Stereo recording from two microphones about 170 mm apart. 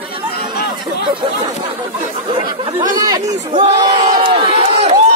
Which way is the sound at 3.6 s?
35° right (ahead or behind).